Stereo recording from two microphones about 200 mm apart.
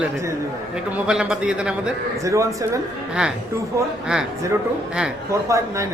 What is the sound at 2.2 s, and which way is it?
Speech, 15° right (ahead or behind).